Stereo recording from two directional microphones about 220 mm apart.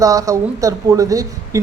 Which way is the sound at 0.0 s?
15° right (ahead or behind).